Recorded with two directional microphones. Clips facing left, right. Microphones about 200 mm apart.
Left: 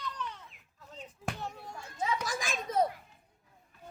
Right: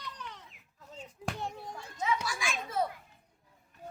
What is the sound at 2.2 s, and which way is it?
Children playing, 40° left (ahead or behind).